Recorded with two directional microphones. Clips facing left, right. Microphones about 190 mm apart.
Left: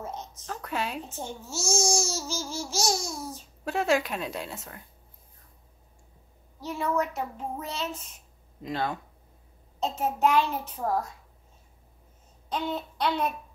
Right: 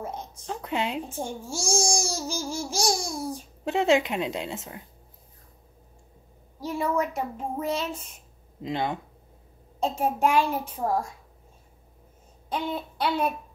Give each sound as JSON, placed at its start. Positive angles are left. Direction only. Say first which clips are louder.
{"t": 0.0, "sound": "a woman's voice", "louder": "right 2 dB", "side_deg": -10}
{"t": 6.6, "sound": "a child's voice", "louder": "right 2 dB", "side_deg": -10}
{"t": 8.6, "sound": "a woman's voice", "louder": "right 2 dB", "side_deg": -20}
{"t": 12.4, "sound": "a child's voice", "louder": "right 1 dB", "side_deg": -10}